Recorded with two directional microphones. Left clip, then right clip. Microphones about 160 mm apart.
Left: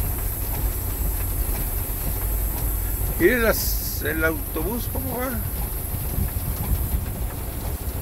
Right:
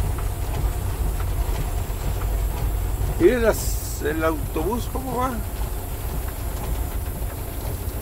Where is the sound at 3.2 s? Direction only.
Centre (ahead or behind).